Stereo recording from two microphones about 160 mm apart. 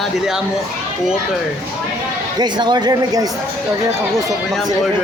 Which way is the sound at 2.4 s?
25° right (ahead or behind).